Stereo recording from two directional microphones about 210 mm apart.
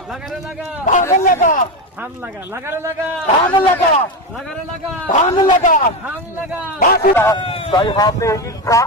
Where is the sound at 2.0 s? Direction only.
10° right (ahead or behind).